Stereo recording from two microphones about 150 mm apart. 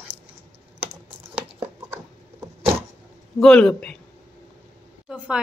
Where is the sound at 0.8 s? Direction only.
35° right (ahead or behind).